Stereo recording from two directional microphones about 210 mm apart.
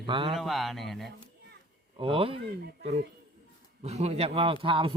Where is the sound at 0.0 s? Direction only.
25° right (ahead or behind).